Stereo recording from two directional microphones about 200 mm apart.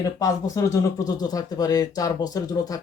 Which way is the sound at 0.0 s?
15° left (ahead or behind).